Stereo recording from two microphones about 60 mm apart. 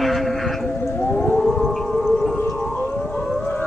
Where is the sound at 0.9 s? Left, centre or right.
Left.